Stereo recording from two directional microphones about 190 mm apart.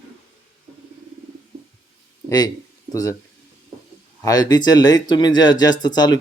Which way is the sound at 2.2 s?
20° left (ahead or behind).